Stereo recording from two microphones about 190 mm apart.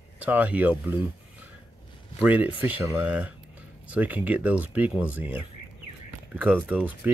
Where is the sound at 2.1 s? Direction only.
10° right (ahead or behind).